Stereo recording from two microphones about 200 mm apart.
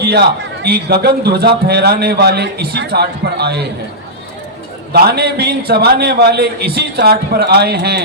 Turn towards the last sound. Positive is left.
turn(degrees=-50)  # may be behind; listen again after turning